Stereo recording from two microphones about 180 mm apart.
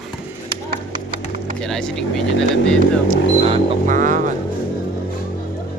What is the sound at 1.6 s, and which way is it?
Speech, 5° left (ahead or behind).